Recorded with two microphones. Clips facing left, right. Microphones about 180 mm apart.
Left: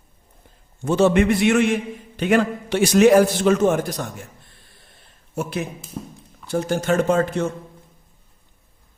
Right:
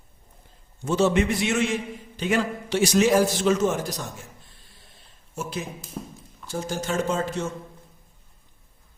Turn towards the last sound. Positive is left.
turn(degrees=60)  # may be behind; listen again after turning